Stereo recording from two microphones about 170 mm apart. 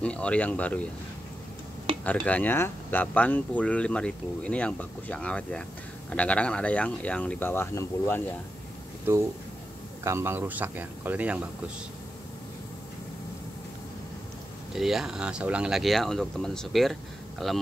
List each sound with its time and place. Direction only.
0.0 s speech: 5° left (ahead or behind)
2.0 s speech: 10° left (ahead or behind)
9.0 s speech: 15° right (ahead or behind)
14.7 s speech: centre (ahead or behind)